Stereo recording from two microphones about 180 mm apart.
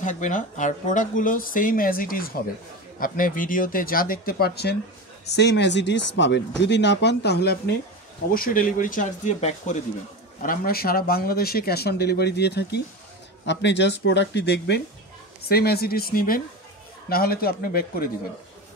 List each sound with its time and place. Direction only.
0.0 s speech: 45° left (ahead or behind); by 4.7 s 60° left (ahead or behind)
5.3 s speech: 75° left (ahead or behind)
8.3 s speech: 50° left (ahead or behind)
10.4 s speech: 50° left (ahead or behind)